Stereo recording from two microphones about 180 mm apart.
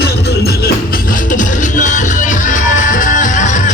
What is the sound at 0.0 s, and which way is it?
Music, 65° left (ahead or behind).